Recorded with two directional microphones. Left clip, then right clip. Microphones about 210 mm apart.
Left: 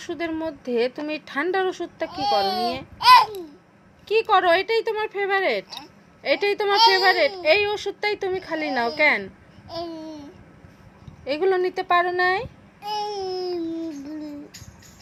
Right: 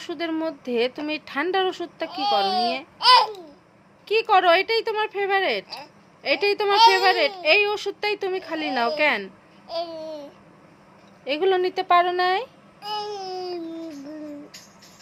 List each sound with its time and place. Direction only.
0.0 s a woman's voice: 5° right (ahead or behind)
2.0 s a child's voice: 20° right (ahead or behind)
3.0 s babbling: 20° right (ahead or behind)
4.1 s speech: 5° right (ahead or behind)
5.6 s speech: 25° right (ahead or behind)
6.2 s a woman's voice: 5° right (ahead or behind)
9.6 s babbling: 25° right (ahead or behind)
11.3 s a woman's voice: 5° right (ahead or behind)
12.9 s babbling: 20° right (ahead or behind)